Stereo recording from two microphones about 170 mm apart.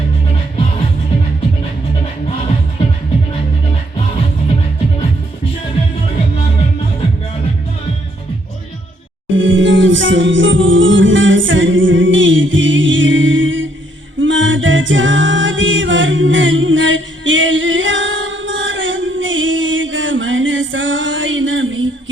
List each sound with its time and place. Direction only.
9.3 s music: 90° right
14.2 s a capella: 90° right